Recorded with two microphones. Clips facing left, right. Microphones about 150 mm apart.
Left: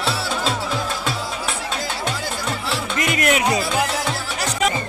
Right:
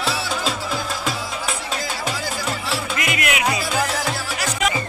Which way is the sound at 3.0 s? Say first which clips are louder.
Left 6 dB; 40° left (ahead or behind).